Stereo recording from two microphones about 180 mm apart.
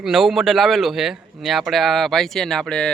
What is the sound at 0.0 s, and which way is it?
A man's voice, centre (ahead or behind).